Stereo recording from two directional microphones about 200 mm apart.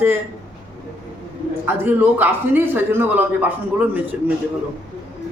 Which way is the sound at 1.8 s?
10° right (ahead or behind).